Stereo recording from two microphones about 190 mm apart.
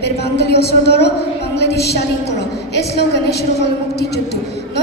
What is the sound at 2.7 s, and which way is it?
Speech, 60° left (ahead or behind).